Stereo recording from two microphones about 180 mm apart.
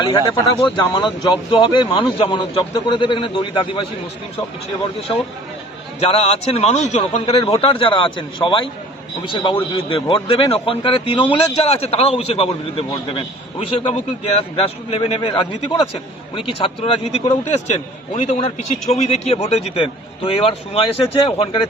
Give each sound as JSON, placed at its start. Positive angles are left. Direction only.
{"t": 0.8, "sound": "a man's voice", "side_deg": 25}
{"t": 6.0, "sound": "a man's voice", "side_deg": 35}